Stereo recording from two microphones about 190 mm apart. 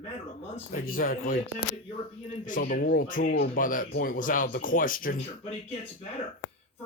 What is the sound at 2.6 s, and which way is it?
Speech, 45° left (ahead or behind).